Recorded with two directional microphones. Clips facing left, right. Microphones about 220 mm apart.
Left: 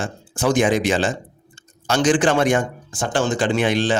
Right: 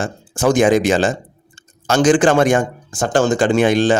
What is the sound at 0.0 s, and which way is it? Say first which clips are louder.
Speech: right 4 dB; 45° right (ahead or behind).